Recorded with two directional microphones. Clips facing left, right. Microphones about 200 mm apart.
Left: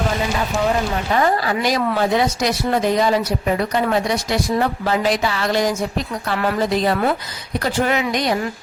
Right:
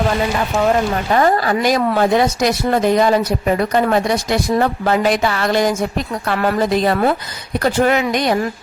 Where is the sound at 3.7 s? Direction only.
50° right (ahead or behind).